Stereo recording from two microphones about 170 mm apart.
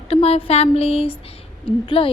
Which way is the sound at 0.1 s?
35° left (ahead or behind).